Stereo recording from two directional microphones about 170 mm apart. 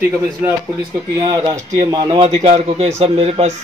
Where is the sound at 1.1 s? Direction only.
25° right (ahead or behind).